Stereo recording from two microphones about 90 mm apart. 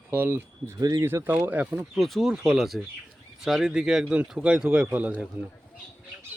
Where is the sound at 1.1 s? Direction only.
25° right (ahead or behind).